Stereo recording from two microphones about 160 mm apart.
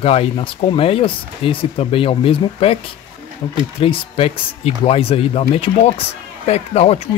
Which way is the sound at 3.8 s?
35° left (ahead or behind).